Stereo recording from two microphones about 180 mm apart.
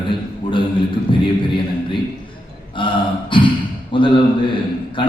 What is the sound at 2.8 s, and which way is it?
A man's voice, 30° left (ahead or behind).